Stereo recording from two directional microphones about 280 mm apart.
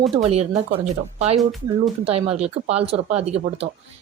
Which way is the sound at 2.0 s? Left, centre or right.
Right.